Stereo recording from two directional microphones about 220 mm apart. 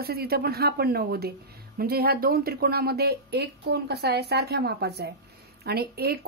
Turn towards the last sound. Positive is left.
turn(degrees=-45)  # may be behind; listen again after turning